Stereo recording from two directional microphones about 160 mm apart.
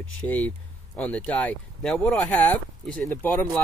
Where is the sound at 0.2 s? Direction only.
10° left (ahead or behind).